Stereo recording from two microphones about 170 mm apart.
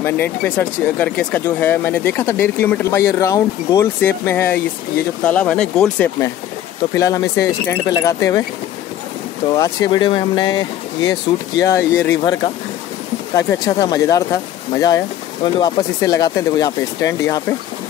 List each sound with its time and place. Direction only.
0.0 s speech: 10° left (ahead or behind)
7.0 s speech: 20° left (ahead or behind)
9.5 s speech: 20° left (ahead or behind)
13.3 s speech: 20° left (ahead or behind)